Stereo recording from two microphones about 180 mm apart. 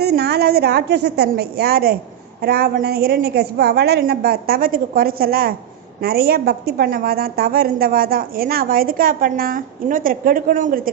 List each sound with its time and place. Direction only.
0.0 s a woman's voice: 60° right (ahead or behind)